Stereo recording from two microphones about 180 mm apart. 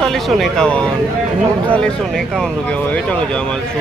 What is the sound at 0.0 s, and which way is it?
A man's voice, centre (ahead or behind).